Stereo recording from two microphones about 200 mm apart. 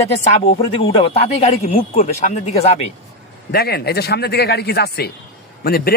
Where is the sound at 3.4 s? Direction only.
50° left (ahead or behind).